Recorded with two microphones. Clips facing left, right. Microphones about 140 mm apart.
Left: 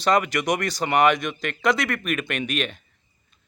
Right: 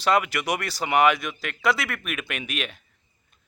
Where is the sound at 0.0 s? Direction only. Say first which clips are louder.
Left 2 dB; 5° right (ahead or behind).